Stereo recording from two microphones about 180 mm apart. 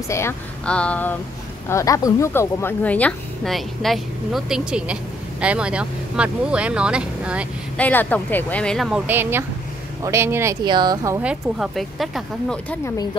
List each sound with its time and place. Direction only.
0.1 s a woman's voice: 15° left (ahead or behind)
1.7 s a woman's voice: 20° left (ahead or behind); by 7.4 s 5° right (ahead or behind)
7.7 s a woman's voice: 10° left (ahead or behind)
12.8 s speech: 20° left (ahead or behind)